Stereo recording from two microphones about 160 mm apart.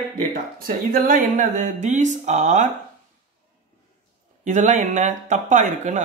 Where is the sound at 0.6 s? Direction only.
60° right (ahead or behind).